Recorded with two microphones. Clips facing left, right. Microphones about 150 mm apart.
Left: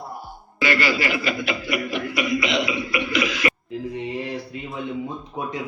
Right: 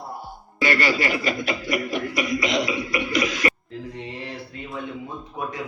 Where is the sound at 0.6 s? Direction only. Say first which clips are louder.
Even; 45° right (ahead or behind).